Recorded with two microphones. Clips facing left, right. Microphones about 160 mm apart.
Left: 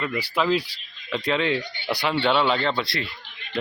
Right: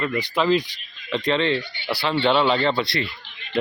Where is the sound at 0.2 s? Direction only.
5° left (ahead or behind).